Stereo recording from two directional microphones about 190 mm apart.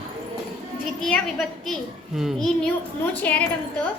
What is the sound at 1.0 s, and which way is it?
Speech, centre (ahead or behind).